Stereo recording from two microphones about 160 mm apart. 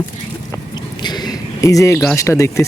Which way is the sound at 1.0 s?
25° left (ahead or behind).